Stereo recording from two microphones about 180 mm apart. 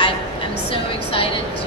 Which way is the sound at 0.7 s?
30° left (ahead or behind).